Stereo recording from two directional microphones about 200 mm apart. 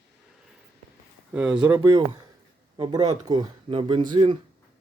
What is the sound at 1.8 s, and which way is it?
Speech, 20° right (ahead or behind).